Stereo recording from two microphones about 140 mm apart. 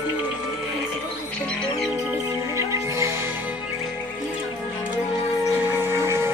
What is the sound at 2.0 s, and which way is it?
Music, 20° right (ahead or behind).